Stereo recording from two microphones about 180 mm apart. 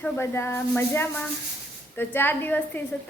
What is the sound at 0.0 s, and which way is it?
A woman's voice, 15° left (ahead or behind).